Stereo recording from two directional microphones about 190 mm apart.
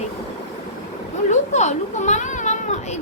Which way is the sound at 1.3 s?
40° left (ahead or behind).